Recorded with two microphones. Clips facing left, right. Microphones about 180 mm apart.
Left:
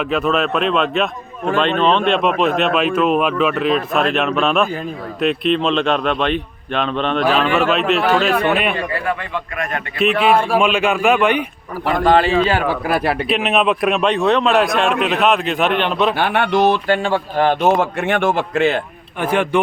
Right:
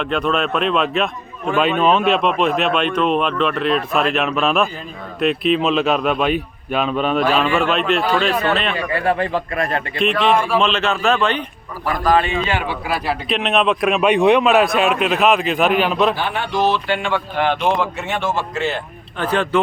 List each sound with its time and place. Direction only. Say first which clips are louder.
0.0 s a man's voice: left 2 dB; 5° left (ahead or behind)
8.9 s speech: right 4 dB; 30° right (ahead or behind)
10.0 s a man's voice: left 2 dB; 5° left (ahead or behind)
11.9 s a man's voice: left 3 dB; 25° left (ahead or behind); by 13.1 s 45° left (ahead or behind)
13.2 s speech: left 1 dB; 5° left (ahead or behind)
14.1 s a man's voice: right 4 dB; 15° right (ahead or behind)
16.1 s speech: left 5 dB; 65° left (ahead or behind)
19.2 s a man's voice: left 1 dB; 10° left (ahead or behind)